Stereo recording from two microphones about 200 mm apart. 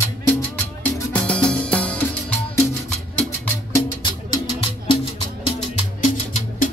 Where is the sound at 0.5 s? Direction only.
5° left (ahead or behind).